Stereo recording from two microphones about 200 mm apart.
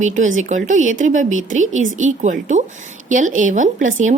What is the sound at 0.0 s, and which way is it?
A woman's voice, 40° right (ahead or behind).